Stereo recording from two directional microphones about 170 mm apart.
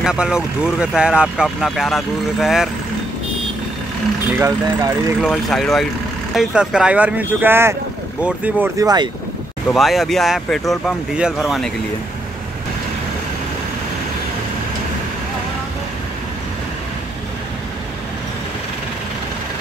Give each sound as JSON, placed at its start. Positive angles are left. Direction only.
{"t": 0.0, "sound": "speech", "side_deg": -5}
{"t": 4.4, "sound": "speech", "side_deg": -20}
{"t": 5.2, "sound": "speech", "side_deg": 0}
{"t": 8.7, "sound": "speech", "side_deg": -25}
{"t": 9.7, "sound": "speech", "side_deg": 0}